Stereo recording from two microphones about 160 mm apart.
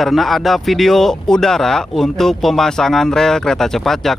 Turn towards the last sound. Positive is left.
turn(degrees=0)  # may be behind; listen again after turning